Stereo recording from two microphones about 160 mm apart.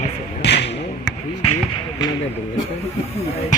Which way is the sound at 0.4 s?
90° left.